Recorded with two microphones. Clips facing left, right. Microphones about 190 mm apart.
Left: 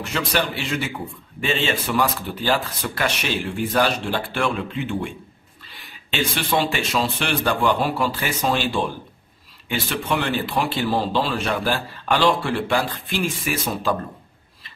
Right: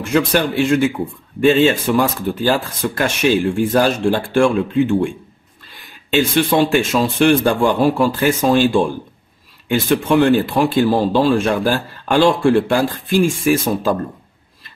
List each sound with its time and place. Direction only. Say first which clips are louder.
0.0 s speech: right 8 dB; 50° right (ahead or behind)
6.0 s speech: right 9 dB; 50° right (ahead or behind)